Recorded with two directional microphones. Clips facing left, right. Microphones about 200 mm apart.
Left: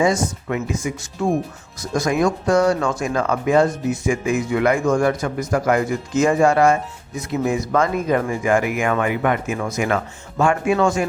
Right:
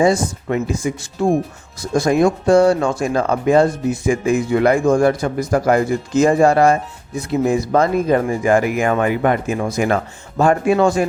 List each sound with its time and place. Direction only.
0.0 s speech: 30° right (ahead or behind)